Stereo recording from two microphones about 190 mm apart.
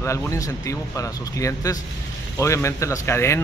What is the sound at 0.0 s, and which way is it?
Speech, 15° left (ahead or behind).